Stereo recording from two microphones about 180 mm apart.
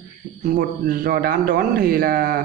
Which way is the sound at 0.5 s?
55° right (ahead or behind).